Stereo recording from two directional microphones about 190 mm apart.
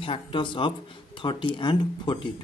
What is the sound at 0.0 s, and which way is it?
Speech, 25° left (ahead or behind).